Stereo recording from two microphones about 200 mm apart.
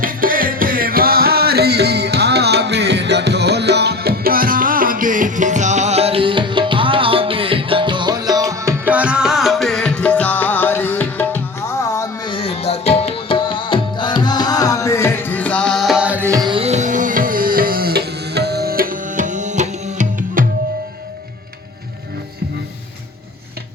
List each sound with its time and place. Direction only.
0.0 s music: 45° right (ahead or behind); by 11.3 s 10° left (ahead or behind)
11.8 s tabla: 15° left (ahead or behind); by 20.4 s 40° right (ahead or behind)